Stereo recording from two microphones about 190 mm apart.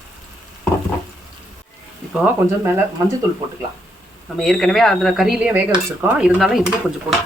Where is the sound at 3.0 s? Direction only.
15° right (ahead or behind).